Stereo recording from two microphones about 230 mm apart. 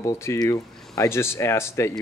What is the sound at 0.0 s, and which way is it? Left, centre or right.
Speech, centre.